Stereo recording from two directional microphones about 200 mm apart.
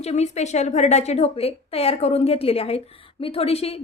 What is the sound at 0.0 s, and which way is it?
A woman's voice, 35° left (ahead or behind).